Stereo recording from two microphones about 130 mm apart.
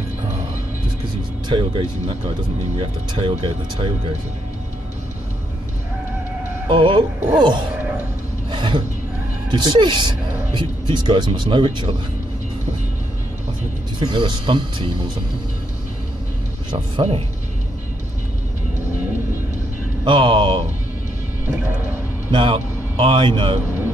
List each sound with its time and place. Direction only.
1.5 s speech: 40° right (ahead or behind)
6.7 s speech: 40° right (ahead or behind)
8.5 s a sound: 40° right (ahead or behind)
9.5 s speech: 35° right (ahead or behind)
13.9 s speech: 40° right (ahead or behind)
16.7 s speech: 45° right (ahead or behind)
20.1 s speech: 40° right (ahead or behind)
22.3 s a man's voice: 40° right (ahead or behind)